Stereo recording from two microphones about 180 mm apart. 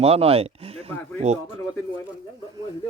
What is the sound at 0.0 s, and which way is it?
Speech, 35° right (ahead or behind).